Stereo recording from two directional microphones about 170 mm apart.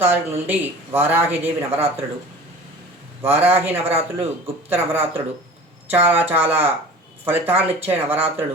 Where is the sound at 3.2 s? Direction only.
15° right (ahead or behind).